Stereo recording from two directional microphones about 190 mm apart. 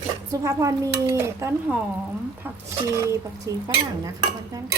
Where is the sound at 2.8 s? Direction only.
15° right (ahead or behind).